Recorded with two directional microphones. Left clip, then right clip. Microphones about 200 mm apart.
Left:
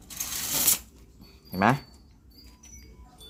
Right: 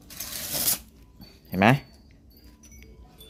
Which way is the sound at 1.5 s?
40° right (ahead or behind).